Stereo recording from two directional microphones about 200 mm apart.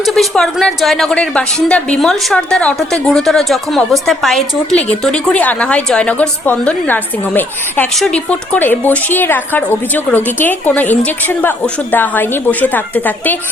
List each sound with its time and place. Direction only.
0.0 s a woman's voice: centre (ahead or behind)